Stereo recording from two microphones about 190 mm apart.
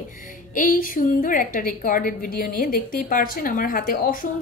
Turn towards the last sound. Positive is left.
turn(degrees=45)  # may be behind; listen again after turning